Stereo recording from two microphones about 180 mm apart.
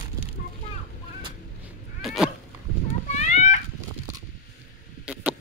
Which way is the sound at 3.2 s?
40° left (ahead or behind).